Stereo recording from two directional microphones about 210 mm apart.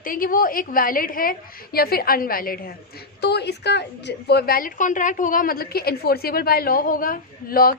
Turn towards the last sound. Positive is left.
turn(degrees=45)  # may be behind; listen again after turning